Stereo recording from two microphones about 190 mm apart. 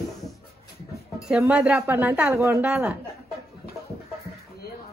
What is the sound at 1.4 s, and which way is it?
Speech, 5° right (ahead or behind).